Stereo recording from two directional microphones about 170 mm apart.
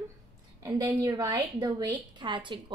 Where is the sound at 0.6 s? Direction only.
20° right (ahead or behind).